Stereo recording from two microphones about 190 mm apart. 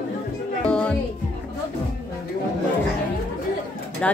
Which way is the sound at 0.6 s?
5° left (ahead or behind).